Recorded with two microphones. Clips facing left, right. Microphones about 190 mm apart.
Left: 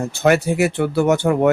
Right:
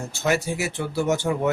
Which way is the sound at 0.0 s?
60° left (ahead or behind).